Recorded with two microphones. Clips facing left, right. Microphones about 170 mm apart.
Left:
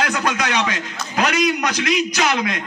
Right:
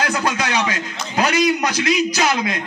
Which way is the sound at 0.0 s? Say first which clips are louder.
Even; 30° right (ahead or behind).